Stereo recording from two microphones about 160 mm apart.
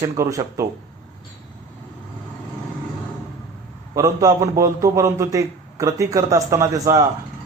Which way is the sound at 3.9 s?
20° right (ahead or behind).